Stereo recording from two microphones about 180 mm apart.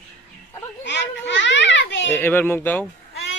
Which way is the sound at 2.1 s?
10° left (ahead or behind).